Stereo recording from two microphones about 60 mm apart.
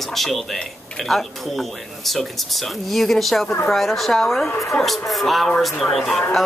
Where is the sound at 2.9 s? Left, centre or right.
Centre.